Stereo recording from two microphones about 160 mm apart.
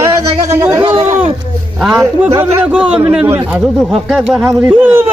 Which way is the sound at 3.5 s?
5° right (ahead or behind).